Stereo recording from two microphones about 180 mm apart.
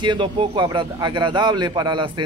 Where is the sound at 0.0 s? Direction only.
25° right (ahead or behind).